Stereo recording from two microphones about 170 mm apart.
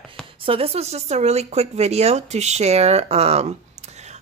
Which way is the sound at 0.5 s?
35° right (ahead or behind).